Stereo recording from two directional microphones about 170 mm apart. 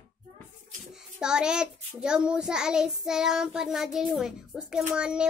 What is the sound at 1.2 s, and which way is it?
Child singing, 5° right (ahead or behind).